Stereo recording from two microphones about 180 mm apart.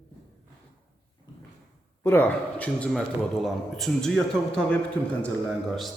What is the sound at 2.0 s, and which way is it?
A man's voice, 10° left (ahead or behind).